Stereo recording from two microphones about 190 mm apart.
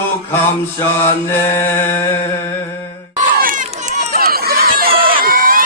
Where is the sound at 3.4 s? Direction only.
45° right (ahead or behind).